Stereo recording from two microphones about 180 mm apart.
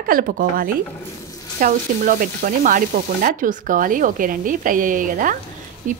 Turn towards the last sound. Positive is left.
turn(degrees=-45)  # may be behind; listen again after turning